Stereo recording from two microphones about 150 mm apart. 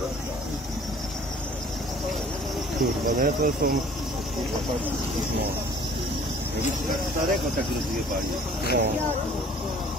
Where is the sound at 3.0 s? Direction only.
65° right (ahead or behind).